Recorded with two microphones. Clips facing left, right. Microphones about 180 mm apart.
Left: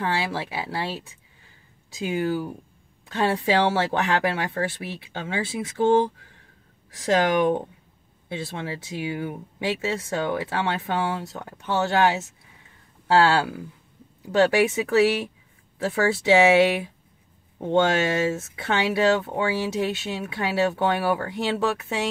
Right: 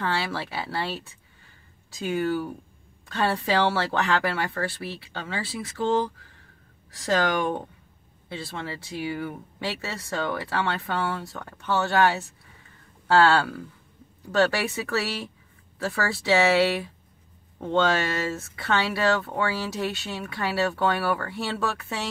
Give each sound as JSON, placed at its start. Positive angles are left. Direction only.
{"t": 0.0, "sound": "speech", "side_deg": 15}